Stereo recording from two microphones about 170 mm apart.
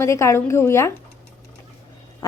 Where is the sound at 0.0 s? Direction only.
15° left (ahead or behind).